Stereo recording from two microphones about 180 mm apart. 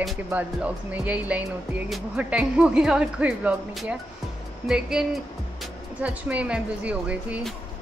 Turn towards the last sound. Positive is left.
turn(degrees=-5)  # may be behind; listen again after turning